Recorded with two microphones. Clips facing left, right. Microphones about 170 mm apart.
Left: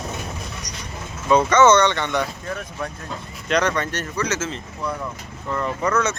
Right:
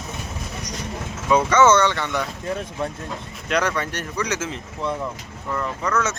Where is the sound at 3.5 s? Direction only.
5° right (ahead or behind).